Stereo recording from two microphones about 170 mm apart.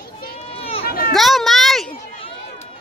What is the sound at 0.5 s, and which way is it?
Run, 35° left (ahead or behind).